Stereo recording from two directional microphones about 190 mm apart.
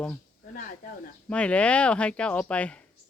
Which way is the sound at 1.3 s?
5° left (ahead or behind).